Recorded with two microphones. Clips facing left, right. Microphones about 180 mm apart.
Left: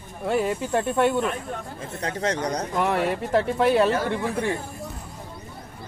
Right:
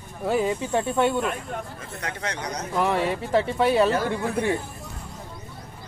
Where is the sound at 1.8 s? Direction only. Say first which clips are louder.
Left 5 dB; 30° left (ahead or behind).